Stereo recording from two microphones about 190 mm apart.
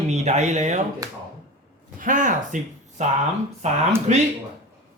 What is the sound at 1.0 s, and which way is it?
Speech, 20° right (ahead or behind).